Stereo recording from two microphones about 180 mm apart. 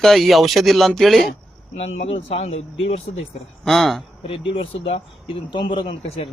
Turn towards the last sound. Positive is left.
turn(degrees=30)  # may be behind; listen again after turning